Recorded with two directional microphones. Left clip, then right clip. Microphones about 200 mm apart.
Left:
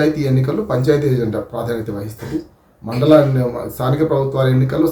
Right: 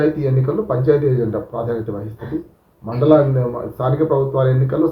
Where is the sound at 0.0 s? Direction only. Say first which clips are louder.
Left 1 dB; 10° left (ahead or behind).